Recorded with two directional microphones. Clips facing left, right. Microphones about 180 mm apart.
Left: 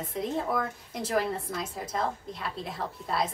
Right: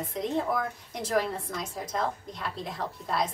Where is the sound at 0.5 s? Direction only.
Centre (ahead or behind).